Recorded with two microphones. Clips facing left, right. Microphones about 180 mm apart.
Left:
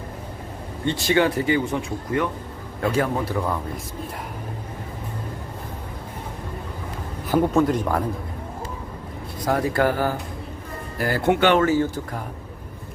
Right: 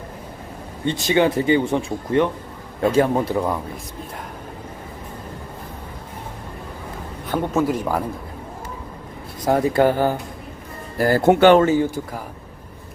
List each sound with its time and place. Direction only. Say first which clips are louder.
0.9 s speech: right 2 dB; 20° right (ahead or behind)
7.3 s speech: left 2 dB; 5° left (ahead or behind)
9.5 s speech: right 4 dB; 20° right (ahead or behind)
10.9 s speech: right 5 dB; 40° right (ahead or behind)
11.6 s speech: right 2 dB; 15° right (ahead or behind)